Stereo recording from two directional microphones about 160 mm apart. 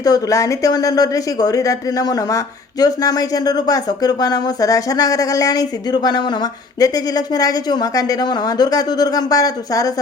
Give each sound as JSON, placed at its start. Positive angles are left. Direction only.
{"t": 0.0, "sound": "speech", "side_deg": 20}